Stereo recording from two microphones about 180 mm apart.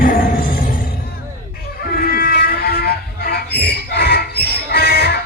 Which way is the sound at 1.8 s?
55° left (ahead or behind).